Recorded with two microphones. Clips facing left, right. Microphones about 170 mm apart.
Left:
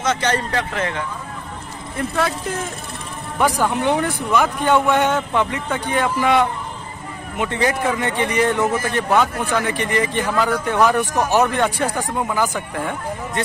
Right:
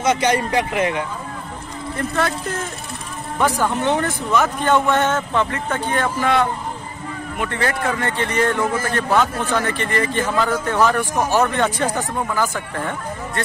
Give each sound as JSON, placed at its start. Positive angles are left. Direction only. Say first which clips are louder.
{"t": 0.0, "sound": "speech", "louder": "right 3 dB", "side_deg": -10}
{"t": 2.0, "sound": "speech", "louder": "even", "side_deg": 5}
{"t": 3.3, "sound": "speech", "louder": "left 1 dB", "side_deg": 10}
{"t": 3.9, "sound": "speech", "louder": "even", "side_deg": 0}